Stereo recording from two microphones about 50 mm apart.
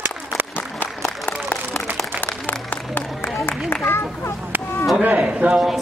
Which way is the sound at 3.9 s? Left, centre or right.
Left.